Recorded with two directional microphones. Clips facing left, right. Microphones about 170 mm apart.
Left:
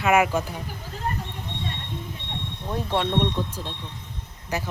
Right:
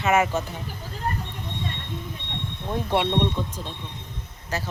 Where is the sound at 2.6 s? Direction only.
10° right (ahead or behind).